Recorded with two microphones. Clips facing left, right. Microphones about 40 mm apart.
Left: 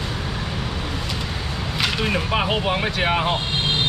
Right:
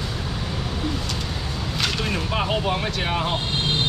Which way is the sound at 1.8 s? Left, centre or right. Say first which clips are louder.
Left 3 dB; left.